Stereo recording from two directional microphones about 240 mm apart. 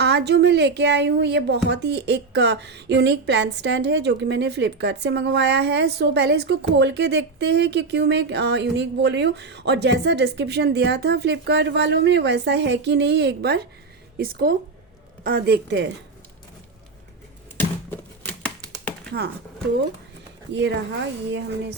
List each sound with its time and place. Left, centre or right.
0.0 s a woman's voice: right
17.6 s a sound: centre
20.5 s a woman's voice: right